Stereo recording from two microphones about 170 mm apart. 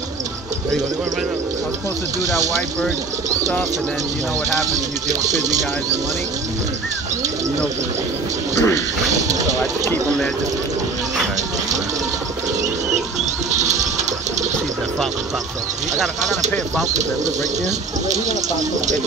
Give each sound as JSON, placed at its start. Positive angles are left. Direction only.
{"t": 8.5, "sound": "a sound", "side_deg": 15}
{"t": 9.3, "sound": "speech", "side_deg": -20}
{"t": 13.2, "sound": "rodents", "side_deg": -45}
{"t": 16.0, "sound": "speech", "side_deg": 0}